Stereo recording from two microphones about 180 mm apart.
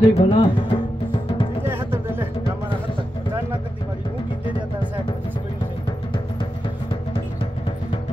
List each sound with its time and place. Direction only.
0.0 s music: 30° left (ahead or behind)
1.6 s music: 15° right (ahead or behind)